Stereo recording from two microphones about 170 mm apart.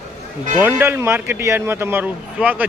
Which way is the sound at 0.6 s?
15° right (ahead or behind).